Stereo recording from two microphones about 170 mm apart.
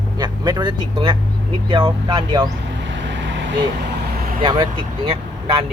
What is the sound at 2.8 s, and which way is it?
Vehicle, 90° right.